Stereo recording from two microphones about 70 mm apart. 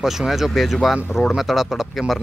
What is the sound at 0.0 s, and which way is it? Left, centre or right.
Speech, centre.